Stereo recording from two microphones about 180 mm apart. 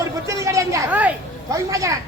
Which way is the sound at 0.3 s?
15° right (ahead or behind).